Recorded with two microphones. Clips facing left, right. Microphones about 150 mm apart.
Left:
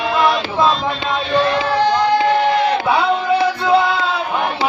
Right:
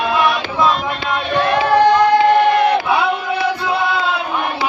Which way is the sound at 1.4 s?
55° right (ahead or behind).